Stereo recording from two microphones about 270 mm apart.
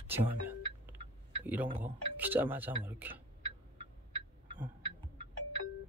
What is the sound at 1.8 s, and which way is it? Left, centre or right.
Speech, centre.